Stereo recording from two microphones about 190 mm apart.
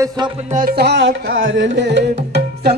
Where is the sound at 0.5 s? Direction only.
55° right (ahead or behind).